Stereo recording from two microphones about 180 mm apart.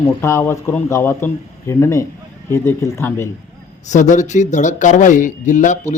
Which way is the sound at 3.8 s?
40° left (ahead or behind).